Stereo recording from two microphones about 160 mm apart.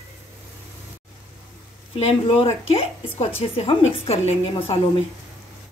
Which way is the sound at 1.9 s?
40° left (ahead or behind).